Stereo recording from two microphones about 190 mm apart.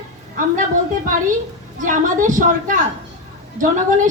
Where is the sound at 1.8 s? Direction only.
40° right (ahead or behind).